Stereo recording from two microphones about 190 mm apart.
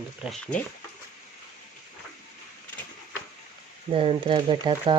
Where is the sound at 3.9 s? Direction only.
30° right (ahead or behind).